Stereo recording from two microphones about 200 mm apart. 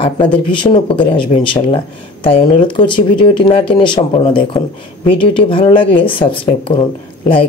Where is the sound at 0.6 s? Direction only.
25° left (ahead or behind).